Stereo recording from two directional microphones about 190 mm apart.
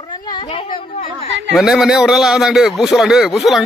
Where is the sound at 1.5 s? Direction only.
Centre (ahead or behind).